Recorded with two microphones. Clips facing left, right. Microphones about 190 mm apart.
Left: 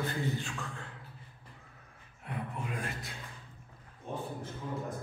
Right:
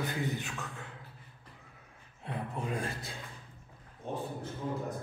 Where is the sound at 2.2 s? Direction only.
30° right (ahead or behind).